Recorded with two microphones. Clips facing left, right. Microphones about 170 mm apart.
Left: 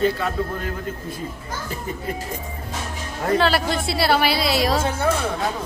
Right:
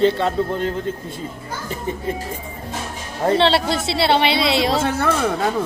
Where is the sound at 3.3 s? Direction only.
25° right (ahead or behind).